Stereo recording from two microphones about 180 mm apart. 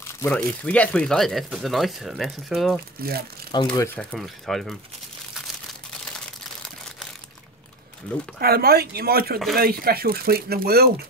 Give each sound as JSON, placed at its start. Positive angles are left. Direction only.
{"t": 0.0, "sound": "speech", "side_deg": 10}
{"t": 3.0, "sound": "speech", "side_deg": -60}
{"t": 3.5, "sound": "speech", "side_deg": 15}
{"t": 8.4, "sound": "speech", "side_deg": -60}